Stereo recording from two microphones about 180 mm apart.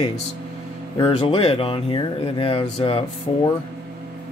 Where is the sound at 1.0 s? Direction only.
30° left (ahead or behind).